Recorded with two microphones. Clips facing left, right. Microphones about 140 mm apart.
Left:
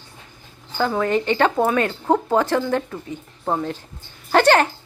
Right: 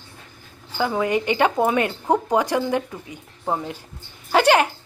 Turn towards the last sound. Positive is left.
turn(degrees=-10)  # may be behind; listen again after turning